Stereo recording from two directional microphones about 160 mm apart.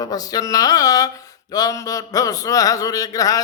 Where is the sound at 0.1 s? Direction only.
20° left (ahead or behind).